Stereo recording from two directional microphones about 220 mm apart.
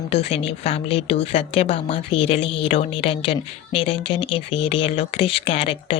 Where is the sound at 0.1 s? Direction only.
30° left (ahead or behind).